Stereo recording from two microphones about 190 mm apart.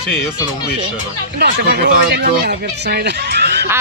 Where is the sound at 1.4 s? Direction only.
60° right (ahead or behind).